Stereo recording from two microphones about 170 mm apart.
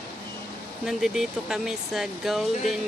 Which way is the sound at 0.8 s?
5° right (ahead or behind).